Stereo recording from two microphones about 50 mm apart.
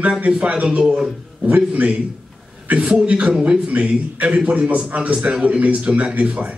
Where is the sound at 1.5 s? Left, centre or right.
Right.